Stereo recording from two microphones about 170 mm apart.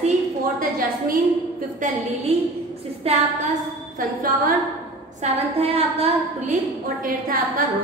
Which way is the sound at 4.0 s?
55° right (ahead or behind).